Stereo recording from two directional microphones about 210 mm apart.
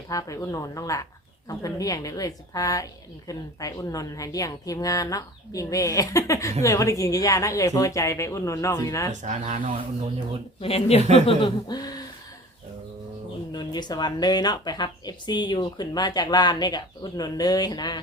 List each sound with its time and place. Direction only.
0.1 s speech: 15° left (ahead or behind)
9.2 s speech: 35° right (ahead or behind)
10.6 s speech: 30° left (ahead or behind)
13.5 s speech: 20° left (ahead or behind)